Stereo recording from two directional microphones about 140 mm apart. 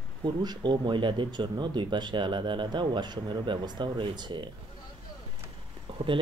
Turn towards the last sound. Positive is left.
turn(degrees=-40)  # may be behind; listen again after turning